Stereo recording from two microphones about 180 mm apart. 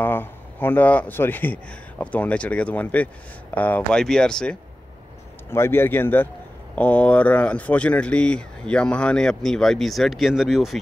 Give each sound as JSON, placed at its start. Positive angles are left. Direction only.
{"t": 0.0, "sound": "speech", "side_deg": 10}